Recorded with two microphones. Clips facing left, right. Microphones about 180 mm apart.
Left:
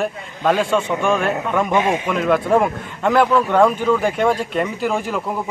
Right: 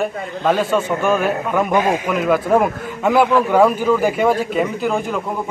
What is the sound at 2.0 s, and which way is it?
A man's voice, 5° right (ahead or behind).